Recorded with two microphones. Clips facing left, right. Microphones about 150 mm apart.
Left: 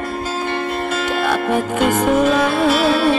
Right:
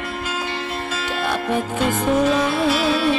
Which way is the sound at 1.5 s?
65° left (ahead or behind).